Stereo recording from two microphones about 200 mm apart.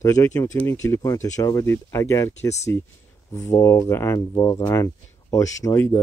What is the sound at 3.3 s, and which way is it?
Speech, 15° left (ahead or behind).